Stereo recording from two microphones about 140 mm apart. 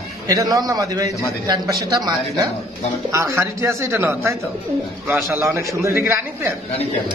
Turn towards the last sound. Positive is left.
turn(degrees=-15)  # may be behind; listen again after turning